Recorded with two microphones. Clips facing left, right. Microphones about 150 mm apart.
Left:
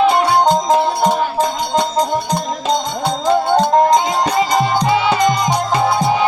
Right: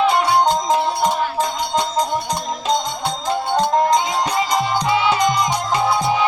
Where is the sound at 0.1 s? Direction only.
45° left (ahead or behind).